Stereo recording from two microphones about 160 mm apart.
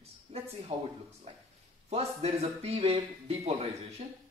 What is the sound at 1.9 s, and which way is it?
A woman's voice, 40° right (ahead or behind).